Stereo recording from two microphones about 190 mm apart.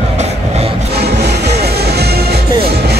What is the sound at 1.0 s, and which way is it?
Music, 60° right (ahead or behind).